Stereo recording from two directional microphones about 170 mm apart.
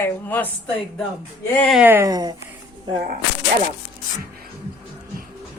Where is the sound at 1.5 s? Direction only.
5° left (ahead or behind).